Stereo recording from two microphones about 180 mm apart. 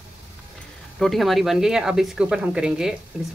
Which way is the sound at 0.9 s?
Centre (ahead or behind).